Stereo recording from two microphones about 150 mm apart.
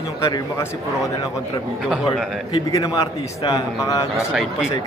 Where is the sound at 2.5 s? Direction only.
25° left (ahead or behind).